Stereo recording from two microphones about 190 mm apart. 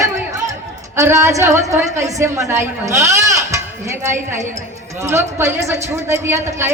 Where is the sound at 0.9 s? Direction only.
15° right (ahead or behind).